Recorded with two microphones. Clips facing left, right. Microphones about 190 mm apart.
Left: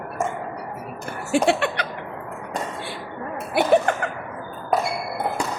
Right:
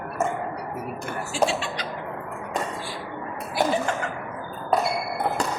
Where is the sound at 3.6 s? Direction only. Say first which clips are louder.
Left 6 dB; 60° left (ahead or behind).